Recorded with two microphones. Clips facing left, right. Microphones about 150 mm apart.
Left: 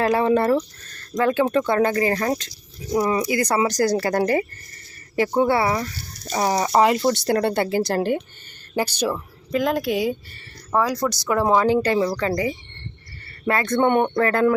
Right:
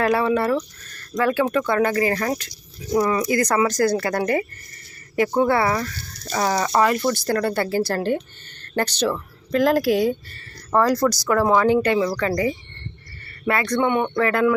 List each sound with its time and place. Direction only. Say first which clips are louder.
0.2 s speech: left 2 dB; 25° left (ahead or behind)
3.8 s speech: left 1 dB; 35° left (ahead or behind)
12.1 s speech: right 1 dB; 25° left (ahead or behind)
13.4 s a man's voice: even; 35° left (ahead or behind)
13.7 s speech: left 3 dB; 45° left (ahead or behind)